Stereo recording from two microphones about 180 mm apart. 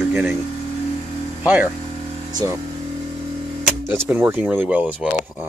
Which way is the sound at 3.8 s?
10° right (ahead or behind).